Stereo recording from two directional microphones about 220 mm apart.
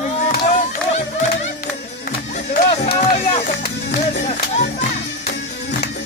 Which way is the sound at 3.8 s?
50° left (ahead or behind).